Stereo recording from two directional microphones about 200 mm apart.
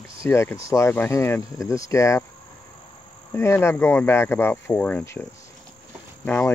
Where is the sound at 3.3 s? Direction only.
10° left (ahead or behind).